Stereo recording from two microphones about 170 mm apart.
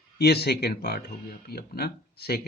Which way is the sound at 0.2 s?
70° left (ahead or behind).